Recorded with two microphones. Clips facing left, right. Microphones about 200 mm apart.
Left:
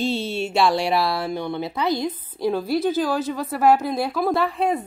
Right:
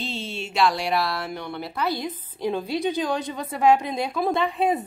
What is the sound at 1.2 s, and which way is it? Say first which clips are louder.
Speech: left 6 dB; 30° left (ahead or behind).